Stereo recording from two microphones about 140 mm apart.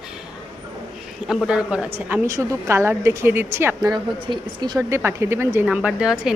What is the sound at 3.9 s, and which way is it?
Speech, 30° right (ahead or behind).